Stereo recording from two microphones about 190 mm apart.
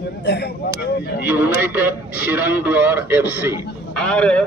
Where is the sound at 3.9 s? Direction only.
5° left (ahead or behind).